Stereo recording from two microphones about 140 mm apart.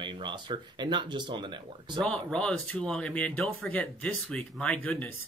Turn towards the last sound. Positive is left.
turn(degrees=10)  # may be behind; listen again after turning